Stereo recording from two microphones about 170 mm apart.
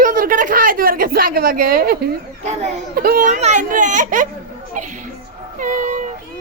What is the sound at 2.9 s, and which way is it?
Speech, 60° right (ahead or behind).